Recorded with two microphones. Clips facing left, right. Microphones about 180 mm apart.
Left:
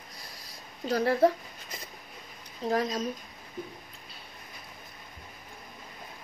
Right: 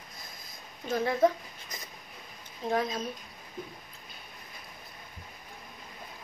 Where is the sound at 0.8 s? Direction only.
35° left (ahead or behind).